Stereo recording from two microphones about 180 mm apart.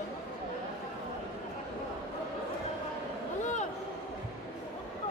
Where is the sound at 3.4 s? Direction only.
40° left (ahead or behind).